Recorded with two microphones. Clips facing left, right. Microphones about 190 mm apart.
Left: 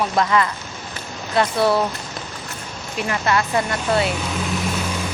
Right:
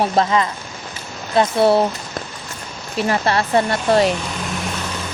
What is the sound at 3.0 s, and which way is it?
Speech, 35° right (ahead or behind).